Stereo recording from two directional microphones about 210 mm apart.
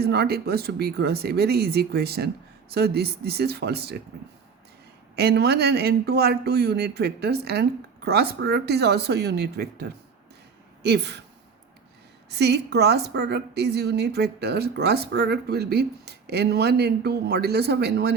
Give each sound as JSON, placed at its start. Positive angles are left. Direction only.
{"t": 0.0, "sound": "a woman's voice", "side_deg": -50}
{"t": 5.1, "sound": "a woman's voice", "side_deg": -50}
{"t": 12.3, "sound": "a woman's voice", "side_deg": -50}